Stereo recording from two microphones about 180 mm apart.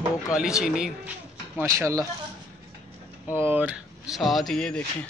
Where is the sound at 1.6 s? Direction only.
15° right (ahead or behind).